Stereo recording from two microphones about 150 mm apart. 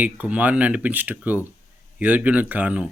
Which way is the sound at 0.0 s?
10° right (ahead or behind).